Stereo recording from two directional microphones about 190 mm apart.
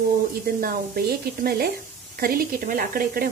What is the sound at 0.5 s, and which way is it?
Speech, 50° right (ahead or behind).